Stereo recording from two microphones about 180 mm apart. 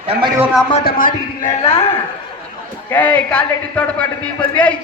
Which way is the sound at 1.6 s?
30° left (ahead or behind).